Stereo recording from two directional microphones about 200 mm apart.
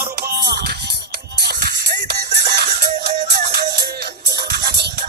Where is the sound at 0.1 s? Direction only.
50° right (ahead or behind).